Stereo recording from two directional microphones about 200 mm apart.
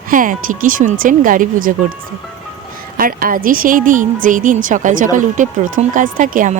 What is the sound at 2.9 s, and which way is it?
Speech, 45° right (ahead or behind).